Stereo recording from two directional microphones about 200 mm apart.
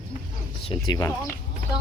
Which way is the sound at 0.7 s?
20° left (ahead or behind).